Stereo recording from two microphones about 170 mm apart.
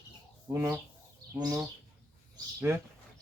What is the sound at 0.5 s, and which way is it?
A man's voice, 15° right (ahead or behind).